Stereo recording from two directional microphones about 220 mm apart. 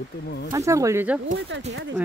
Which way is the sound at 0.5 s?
15° right (ahead or behind).